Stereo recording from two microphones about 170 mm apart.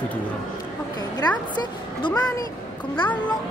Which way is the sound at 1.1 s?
25° left (ahead or behind).